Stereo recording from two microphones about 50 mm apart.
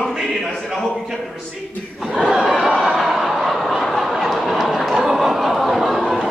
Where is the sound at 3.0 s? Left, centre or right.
Centre.